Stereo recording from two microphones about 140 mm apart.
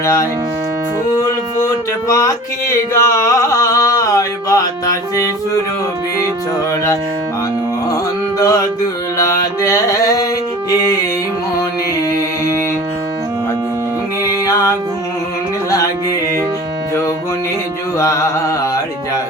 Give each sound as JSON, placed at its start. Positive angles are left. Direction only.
{"t": 0.0, "sound": "music", "side_deg": 20}
{"t": 2.0, "sound": "music", "side_deg": 25}
{"t": 2.9, "sound": "a sound", "side_deg": 20}
{"t": 8.4, "sound": "music", "side_deg": 25}
{"t": 9.1, "sound": "mantra", "side_deg": 25}
{"t": 15.7, "sound": "music", "side_deg": 20}
{"t": 17.9, "sound": "carnatic music", "side_deg": 20}